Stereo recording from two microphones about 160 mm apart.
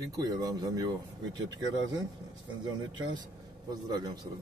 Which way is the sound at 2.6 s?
25° right (ahead or behind).